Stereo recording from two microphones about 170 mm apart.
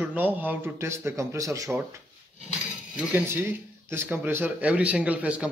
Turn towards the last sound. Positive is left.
turn(degrees=-10)  # may be behind; listen again after turning